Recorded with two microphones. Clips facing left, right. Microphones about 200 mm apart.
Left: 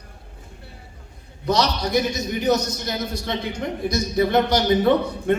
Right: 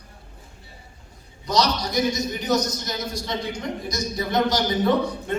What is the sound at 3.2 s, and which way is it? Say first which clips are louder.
A man's voice: left 2 dB; 60° left (ahead or behind).